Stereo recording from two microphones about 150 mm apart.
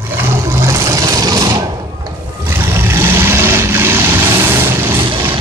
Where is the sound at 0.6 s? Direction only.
20° right (ahead or behind).